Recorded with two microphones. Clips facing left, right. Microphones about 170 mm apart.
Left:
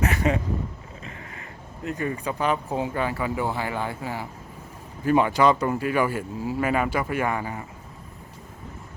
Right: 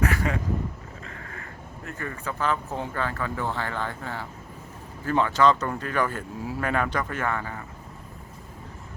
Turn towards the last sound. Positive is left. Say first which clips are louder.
# left 3 dB
turn(degrees=15)  # may be behind; listen again after turning